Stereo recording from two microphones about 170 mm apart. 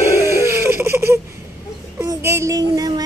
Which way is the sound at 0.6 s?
15° right (ahead or behind).